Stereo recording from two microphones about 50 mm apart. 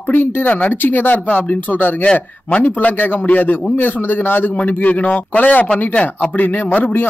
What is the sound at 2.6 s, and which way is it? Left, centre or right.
A man's voice, left.